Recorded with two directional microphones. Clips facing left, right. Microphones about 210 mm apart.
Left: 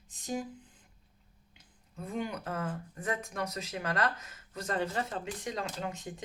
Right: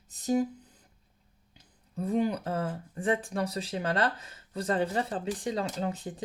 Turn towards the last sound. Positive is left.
turn(degrees=-35)  # may be behind; listen again after turning